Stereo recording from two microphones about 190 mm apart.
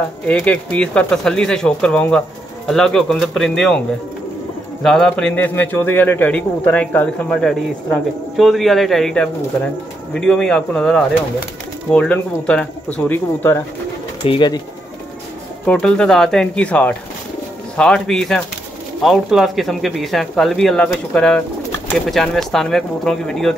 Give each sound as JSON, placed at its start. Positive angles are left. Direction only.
{"t": 0.3, "sound": "speech", "side_deg": 5}
{"t": 4.8, "sound": "a man's voice", "side_deg": 0}
{"t": 14.2, "sound": "speech", "side_deg": 25}
{"t": 15.6, "sound": "speech", "side_deg": 5}